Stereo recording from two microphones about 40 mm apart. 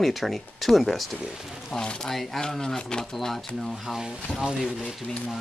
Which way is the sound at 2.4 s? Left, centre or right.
Centre.